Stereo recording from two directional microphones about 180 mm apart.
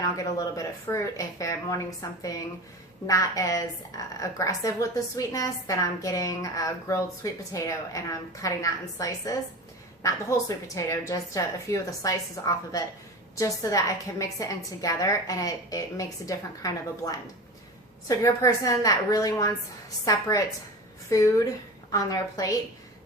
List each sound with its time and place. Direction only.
0.0 s a woman's voice: 20° left (ahead or behind)